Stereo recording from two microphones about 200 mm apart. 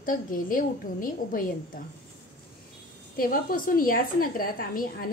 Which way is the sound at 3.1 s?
45° left (ahead or behind).